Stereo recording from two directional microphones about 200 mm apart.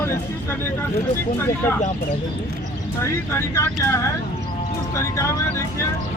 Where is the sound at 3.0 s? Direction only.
15° left (ahead or behind).